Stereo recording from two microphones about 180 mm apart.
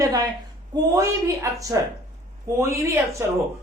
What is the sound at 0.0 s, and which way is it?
A woman's voice, 20° right (ahead or behind).